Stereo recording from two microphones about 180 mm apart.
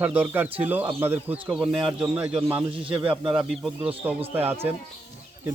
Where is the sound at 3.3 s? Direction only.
5° right (ahead or behind).